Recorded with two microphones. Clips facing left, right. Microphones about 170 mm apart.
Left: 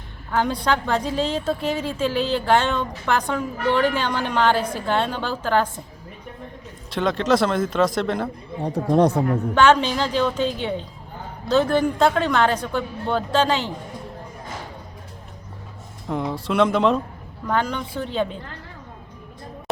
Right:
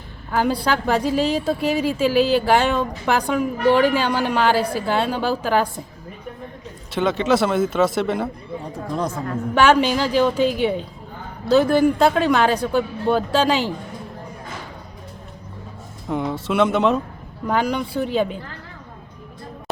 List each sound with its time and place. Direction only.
0.3 s a woman's voice: 5° right (ahead or behind)
6.9 s a man's voice: centre (ahead or behind)
8.7 s speech: 65° left (ahead or behind)
9.6 s a woman's voice: 10° right (ahead or behind)
16.0 s a man's voice: centre (ahead or behind)